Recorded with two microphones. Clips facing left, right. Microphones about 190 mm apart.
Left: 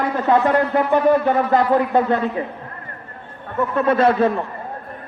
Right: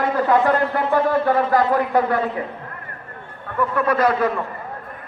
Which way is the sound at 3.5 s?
25° left (ahead or behind).